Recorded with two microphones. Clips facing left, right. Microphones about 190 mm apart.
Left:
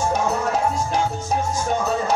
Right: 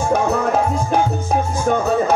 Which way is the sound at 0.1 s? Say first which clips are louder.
Right 5 dB; 55° right (ahead or behind).